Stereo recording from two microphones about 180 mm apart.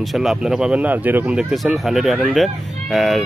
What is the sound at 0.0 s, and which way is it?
Speech, centre (ahead or behind).